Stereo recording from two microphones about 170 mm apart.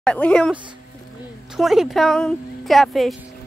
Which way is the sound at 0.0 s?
5° left (ahead or behind).